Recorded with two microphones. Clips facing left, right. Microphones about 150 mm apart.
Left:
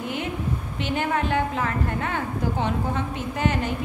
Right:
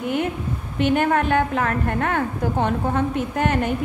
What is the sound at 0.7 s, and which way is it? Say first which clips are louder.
A woman's voice: right 7 dB; 55° right (ahead or behind).